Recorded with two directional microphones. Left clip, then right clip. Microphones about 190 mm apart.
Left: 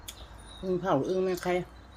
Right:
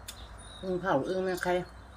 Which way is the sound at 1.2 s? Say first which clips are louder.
Even; 20° left (ahead or behind).